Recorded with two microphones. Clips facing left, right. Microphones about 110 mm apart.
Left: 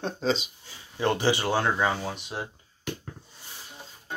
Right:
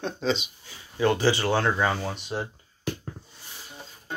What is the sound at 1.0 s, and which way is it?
Speech, 20° left (ahead or behind).